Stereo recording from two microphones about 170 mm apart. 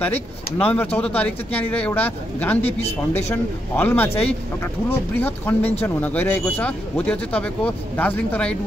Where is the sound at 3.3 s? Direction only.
10° left (ahead or behind).